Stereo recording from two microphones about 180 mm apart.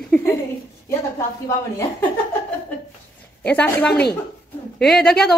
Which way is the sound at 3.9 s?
65° left (ahead or behind).